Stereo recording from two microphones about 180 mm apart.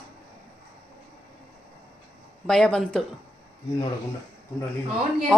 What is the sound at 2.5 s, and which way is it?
Speech, 5° left (ahead or behind).